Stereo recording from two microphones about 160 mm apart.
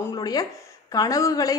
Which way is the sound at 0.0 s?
25° left (ahead or behind).